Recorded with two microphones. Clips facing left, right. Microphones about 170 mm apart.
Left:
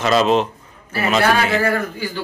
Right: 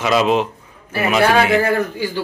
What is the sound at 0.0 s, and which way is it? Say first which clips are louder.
A man's voice: even; 10° right (ahead or behind).